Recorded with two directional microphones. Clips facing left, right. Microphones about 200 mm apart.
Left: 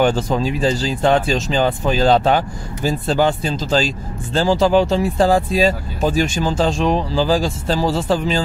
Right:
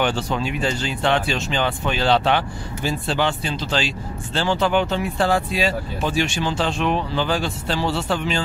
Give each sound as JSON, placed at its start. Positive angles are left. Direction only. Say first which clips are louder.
{"t": 0.0, "sound": "speech", "louder": "left 5 dB", "side_deg": 40}